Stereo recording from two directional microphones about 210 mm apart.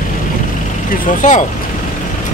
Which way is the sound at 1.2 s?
35° left (ahead or behind).